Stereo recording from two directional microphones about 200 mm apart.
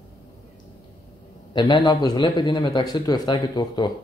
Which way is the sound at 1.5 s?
25° left (ahead or behind).